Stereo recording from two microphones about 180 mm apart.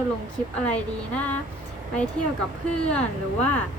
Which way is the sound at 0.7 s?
10° left (ahead or behind).